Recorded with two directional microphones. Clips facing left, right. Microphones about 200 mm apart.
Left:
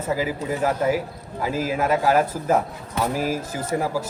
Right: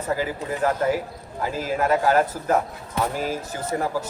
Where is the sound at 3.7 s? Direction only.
15° left (ahead or behind).